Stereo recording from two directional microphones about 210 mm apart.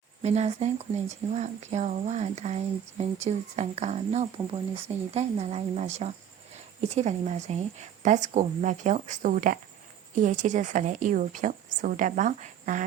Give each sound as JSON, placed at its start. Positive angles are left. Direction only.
{"t": 0.2, "sound": "a woman's voice", "side_deg": -30}